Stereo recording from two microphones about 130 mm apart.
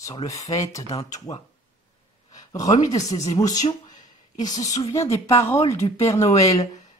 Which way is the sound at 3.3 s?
30° left (ahead or behind).